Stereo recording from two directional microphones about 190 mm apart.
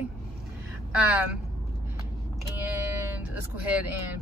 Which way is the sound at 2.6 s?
10° right (ahead or behind).